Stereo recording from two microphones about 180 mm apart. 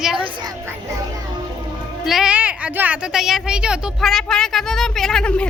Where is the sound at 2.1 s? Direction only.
5° right (ahead or behind).